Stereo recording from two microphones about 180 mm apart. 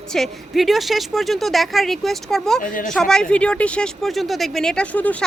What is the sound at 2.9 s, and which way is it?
A woman's voice, 5° left (ahead or behind).